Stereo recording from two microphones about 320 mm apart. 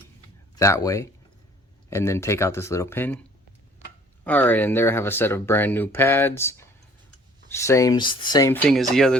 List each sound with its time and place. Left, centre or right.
0.5 s speech: centre
4.2 s speech: centre